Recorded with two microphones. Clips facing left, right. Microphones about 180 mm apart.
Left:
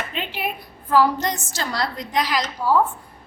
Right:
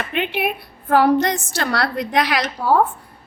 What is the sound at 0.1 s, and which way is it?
A woman's voice, 65° right (ahead or behind).